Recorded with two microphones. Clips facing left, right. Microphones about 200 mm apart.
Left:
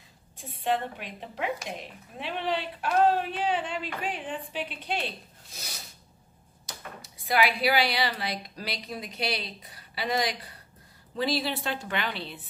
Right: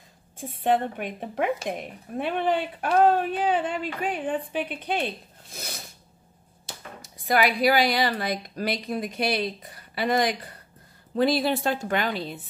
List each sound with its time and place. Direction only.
0.4 s a woman's voice: 50° right (ahead or behind)
7.0 s a woman's voice: 45° right (ahead or behind)